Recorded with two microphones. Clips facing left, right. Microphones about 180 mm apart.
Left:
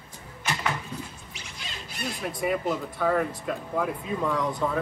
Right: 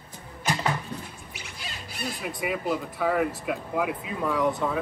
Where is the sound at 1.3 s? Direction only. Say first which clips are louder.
Right 1 dB; 5° right (ahead or behind).